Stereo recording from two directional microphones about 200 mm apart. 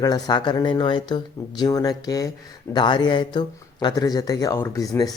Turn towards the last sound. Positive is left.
turn(degrees=15)  # may be behind; listen again after turning